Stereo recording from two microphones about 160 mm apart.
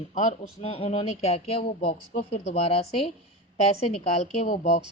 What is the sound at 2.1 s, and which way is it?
Speech, 60° left (ahead or behind).